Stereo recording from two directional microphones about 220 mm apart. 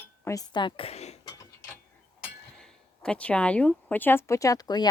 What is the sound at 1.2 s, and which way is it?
Gears, 20° left (ahead or behind).